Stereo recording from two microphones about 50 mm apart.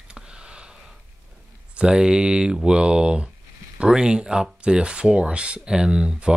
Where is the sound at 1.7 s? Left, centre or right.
Centre.